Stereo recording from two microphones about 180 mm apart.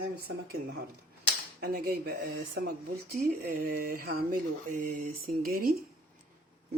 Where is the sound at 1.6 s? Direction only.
60° right (ahead or behind).